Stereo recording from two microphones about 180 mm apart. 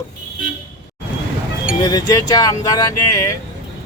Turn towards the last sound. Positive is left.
turn(degrees=20)  # may be behind; listen again after turning